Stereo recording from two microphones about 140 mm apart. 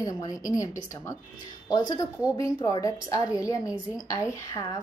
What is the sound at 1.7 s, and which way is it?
Speech, 30° left (ahead or behind).